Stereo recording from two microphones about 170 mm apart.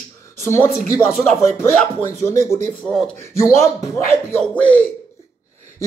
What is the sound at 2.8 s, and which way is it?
Speech, 5° left (ahead or behind).